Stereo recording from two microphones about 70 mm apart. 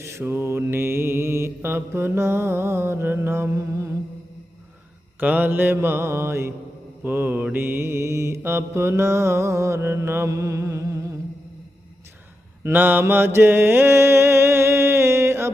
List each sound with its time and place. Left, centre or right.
0.0 s mantra: right
5.2 s mantra: right
7.0 s mantra: right
12.6 s mantra: right